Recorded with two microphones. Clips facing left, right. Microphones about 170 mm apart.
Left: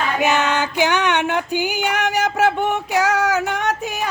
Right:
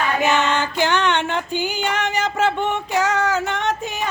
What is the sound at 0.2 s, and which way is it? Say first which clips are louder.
Female singing: left 2 dB; 10° left (ahead or behind).